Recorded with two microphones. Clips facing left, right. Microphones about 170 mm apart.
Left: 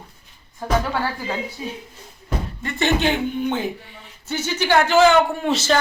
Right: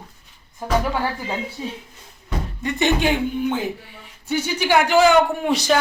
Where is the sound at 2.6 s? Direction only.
15° right (ahead or behind).